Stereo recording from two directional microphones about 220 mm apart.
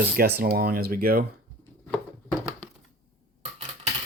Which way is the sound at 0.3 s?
45° right (ahead or behind).